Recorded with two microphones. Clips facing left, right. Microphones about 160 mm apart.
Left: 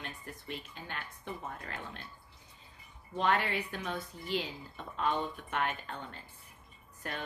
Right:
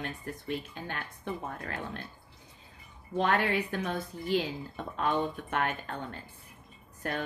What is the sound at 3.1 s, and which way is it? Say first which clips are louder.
Speech: right 3 dB; 50° right (ahead or behind).